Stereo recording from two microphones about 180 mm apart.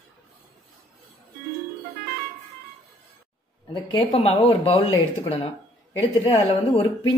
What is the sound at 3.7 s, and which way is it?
Speech, 20° left (ahead or behind).